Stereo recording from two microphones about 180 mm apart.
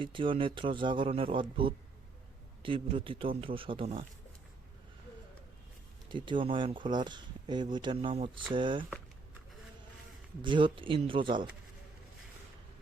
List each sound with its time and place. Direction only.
0.0 s speech: 30° right (ahead or behind)
6.1 s speech: 25° right (ahead or behind)
10.4 s speech: 25° right (ahead or behind)